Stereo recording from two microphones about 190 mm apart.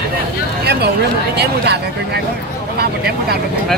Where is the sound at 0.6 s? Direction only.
60° right (ahead or behind).